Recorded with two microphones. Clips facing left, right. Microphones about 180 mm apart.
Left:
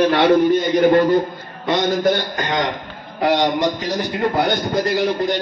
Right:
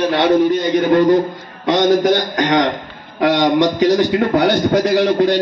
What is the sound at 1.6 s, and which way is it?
A man's voice, 90° right.